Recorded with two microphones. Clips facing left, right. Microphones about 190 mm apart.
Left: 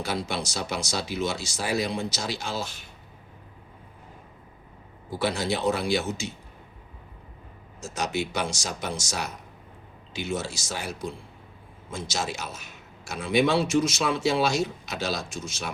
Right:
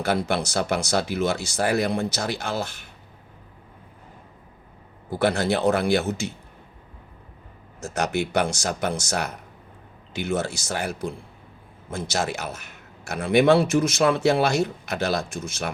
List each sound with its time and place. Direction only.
0.0 s a man's voice: 60° right (ahead or behind)
5.2 s a man's voice: 60° right (ahead or behind)
7.8 s a man's voice: 60° right (ahead or behind)